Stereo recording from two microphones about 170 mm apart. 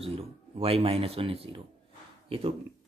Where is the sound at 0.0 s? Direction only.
35° right (ahead or behind).